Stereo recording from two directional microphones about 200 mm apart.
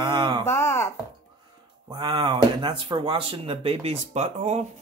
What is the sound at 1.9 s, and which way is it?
Speech, 25° right (ahead or behind).